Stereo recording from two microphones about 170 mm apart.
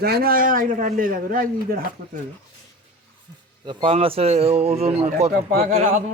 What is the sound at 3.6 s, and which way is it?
A man's voice, 30° right (ahead or behind).